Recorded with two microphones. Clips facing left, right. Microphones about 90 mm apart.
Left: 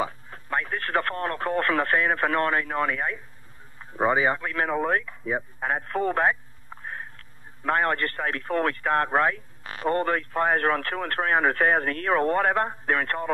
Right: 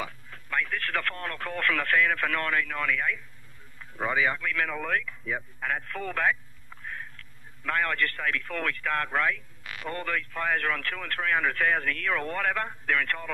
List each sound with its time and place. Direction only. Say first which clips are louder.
0.0 s speech: left 7 dB; 30° left (ahead or behind)